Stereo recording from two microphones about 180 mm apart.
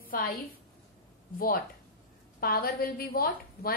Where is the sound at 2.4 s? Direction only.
55° left (ahead or behind).